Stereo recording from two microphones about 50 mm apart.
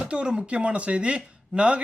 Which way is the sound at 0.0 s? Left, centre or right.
Right.